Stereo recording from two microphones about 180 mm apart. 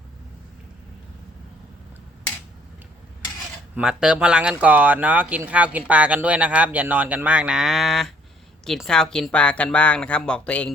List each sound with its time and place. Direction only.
3.8 s speech: 5° right (ahead or behind)